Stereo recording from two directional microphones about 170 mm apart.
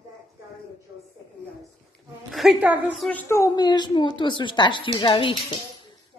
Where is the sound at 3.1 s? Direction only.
10° left (ahead or behind).